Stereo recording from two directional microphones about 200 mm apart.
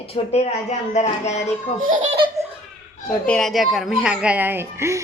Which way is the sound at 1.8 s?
40° right (ahead or behind).